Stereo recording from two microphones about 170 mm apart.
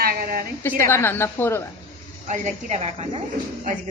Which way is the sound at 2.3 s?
45° right (ahead or behind).